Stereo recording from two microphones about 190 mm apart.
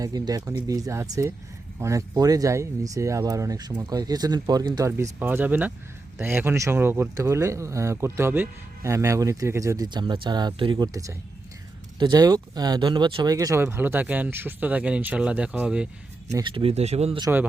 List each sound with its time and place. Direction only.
0.0 s speech: 20° right (ahead or behind); by 15.9 s 5° right (ahead or behind)
16.3 s speech: 25° right (ahead or behind)